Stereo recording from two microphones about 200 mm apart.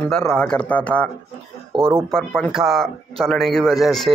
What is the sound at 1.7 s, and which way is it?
Speech, 25° right (ahead or behind).